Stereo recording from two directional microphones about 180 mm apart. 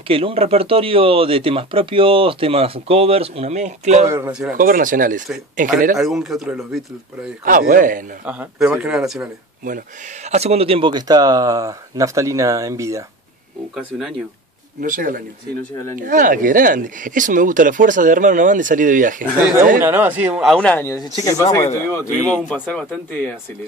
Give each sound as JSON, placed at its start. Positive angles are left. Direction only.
{"t": 0.1, "sound": "speech", "side_deg": -30}
{"t": 4.3, "sound": "a man's voice", "side_deg": -5}
{"t": 4.6, "sound": "speech", "side_deg": -50}
{"t": 5.9, "sound": "a man's voice", "side_deg": 0}
{"t": 7.4, "sound": "speech", "side_deg": -50}
{"t": 8.3, "sound": "a man's voice", "side_deg": -5}
{"t": 10.2, "sound": "speech", "side_deg": -35}
{"t": 13.7, "sound": "a man's voice", "side_deg": 0}
{"t": 14.8, "sound": "speech", "side_deg": -50}
{"t": 19.8, "sound": "a man's voice", "side_deg": -10}